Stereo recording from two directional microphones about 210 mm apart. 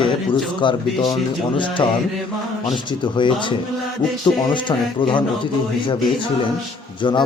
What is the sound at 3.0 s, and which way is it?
Speech, 25° left (ahead or behind).